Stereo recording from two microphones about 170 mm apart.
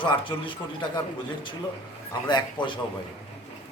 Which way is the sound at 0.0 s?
30° left (ahead or behind).